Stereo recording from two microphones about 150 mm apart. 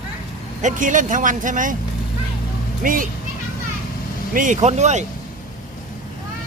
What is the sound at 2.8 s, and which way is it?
Speech, 70° right (ahead or behind).